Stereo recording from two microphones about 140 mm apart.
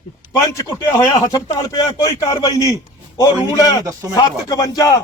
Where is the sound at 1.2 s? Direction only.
25° left (ahead or behind).